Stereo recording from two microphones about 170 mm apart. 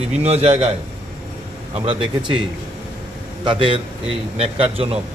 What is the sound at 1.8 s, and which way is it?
A man's voice, 30° right (ahead or behind).